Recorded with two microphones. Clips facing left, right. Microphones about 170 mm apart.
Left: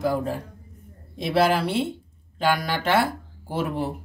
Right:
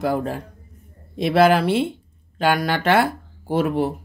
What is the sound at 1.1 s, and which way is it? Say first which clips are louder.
Speech: right 5 dB; 65° right (ahead or behind).